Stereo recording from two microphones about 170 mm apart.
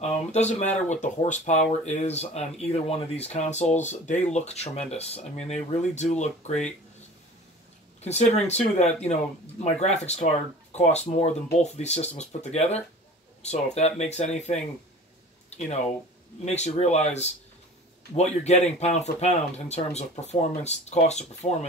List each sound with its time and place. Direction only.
0.0 s speech: 40° left (ahead or behind)
8.0 s speech: 40° left (ahead or behind)
16.4 s speech: 40° left (ahead or behind)